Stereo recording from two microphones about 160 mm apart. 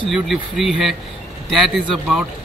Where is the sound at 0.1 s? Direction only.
Centre (ahead or behind).